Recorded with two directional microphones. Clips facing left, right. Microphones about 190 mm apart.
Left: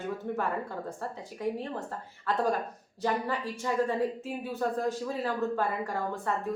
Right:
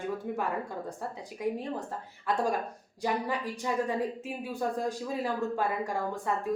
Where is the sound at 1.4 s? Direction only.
15° right (ahead or behind).